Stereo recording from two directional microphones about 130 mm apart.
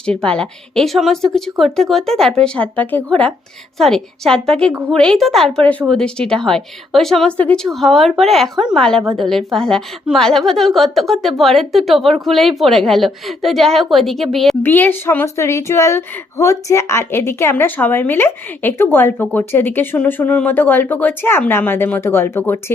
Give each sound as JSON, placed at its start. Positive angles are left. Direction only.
{"t": 0.0, "sound": "a woman's voice", "side_deg": 5}
{"t": 14.6, "sound": "speech", "side_deg": 15}